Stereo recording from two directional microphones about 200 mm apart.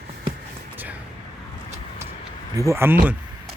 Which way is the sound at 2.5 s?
15° right (ahead or behind).